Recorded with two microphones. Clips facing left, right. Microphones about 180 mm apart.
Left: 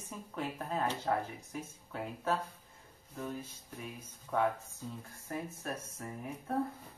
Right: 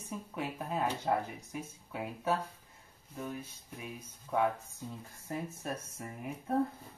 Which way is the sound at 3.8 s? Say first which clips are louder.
Right 1 dB; 10° right (ahead or behind).